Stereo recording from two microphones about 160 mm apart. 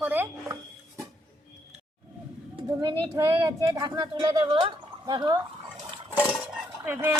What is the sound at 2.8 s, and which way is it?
Speech, 25° right (ahead or behind).